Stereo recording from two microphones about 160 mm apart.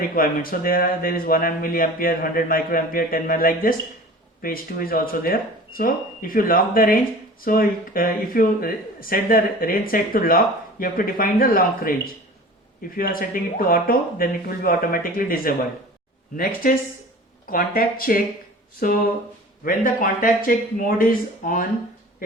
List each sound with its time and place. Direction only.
0.1 s speech: 65° left (ahead or behind)
13.0 s speech: 65° left (ahead or behind)